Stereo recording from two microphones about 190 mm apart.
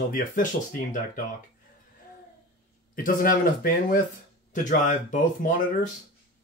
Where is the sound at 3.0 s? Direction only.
45° left (ahead or behind).